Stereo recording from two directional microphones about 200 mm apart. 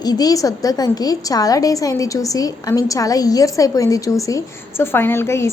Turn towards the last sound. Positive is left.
turn(degrees=10)  # may be behind; listen again after turning